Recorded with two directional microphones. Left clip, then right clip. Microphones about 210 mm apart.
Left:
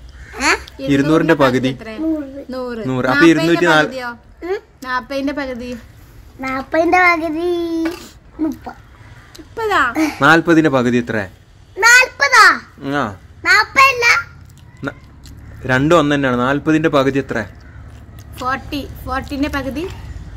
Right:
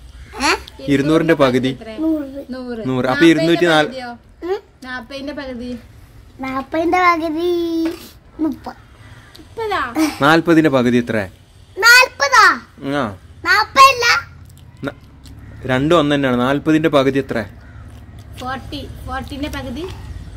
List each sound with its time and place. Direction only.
0.3 s babbling: 5° right (ahead or behind)
0.8 s a child's voice: 5° right (ahead or behind)
2.5 s speech: 45° left (ahead or behind)
2.9 s a child's voice: 5° right (ahead or behind)
3.9 s speech: 45° left (ahead or behind)
4.4 s a sound: 10° right (ahead or behind)
4.7 s a woman's voice: 40° left (ahead or behind)
6.4 s a child's voice: centre (ahead or behind)
9.6 s a woman's voice: 40° left (ahead or behind)
9.9 s a child's voice: 5° right (ahead or behind)
11.8 s babbling: 5° right (ahead or behind)
14.8 s speech: 5° right (ahead or behind)
18.5 s a woman's voice: 40° left (ahead or behind)